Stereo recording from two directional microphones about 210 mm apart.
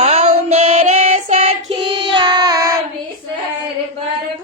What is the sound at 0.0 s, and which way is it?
Child singing, 30° right (ahead or behind).